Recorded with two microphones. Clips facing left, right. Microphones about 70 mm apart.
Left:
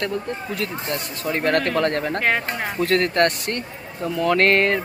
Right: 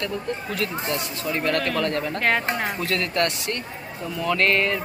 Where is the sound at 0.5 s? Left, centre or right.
Left.